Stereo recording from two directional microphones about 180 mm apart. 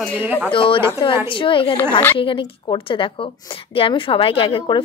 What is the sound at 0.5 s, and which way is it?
A woman's voice, 30° left (ahead or behind).